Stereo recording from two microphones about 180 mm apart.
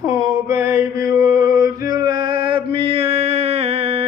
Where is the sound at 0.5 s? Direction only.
15° right (ahead or behind).